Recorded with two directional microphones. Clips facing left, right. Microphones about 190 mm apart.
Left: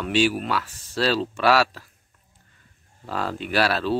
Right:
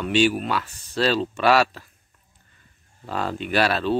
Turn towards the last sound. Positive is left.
turn(degrees=5)  # may be behind; listen again after turning